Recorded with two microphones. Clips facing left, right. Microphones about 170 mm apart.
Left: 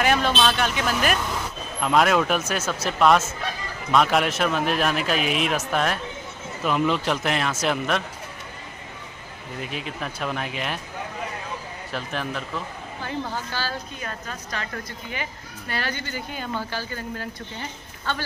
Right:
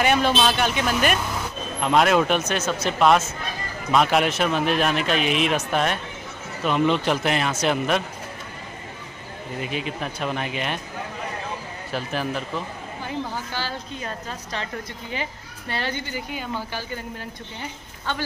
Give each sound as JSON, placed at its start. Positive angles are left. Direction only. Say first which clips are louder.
{"t": 0.0, "sound": "speech", "louder": "right 1 dB", "side_deg": 0}
{"t": 9.6, "sound": "speech", "louder": "right 3 dB", "side_deg": 0}
{"t": 11.9, "sound": "speech", "louder": "right 3 dB", "side_deg": 0}
{"t": 13.5, "sound": "a woman's voice", "louder": "even", "side_deg": -20}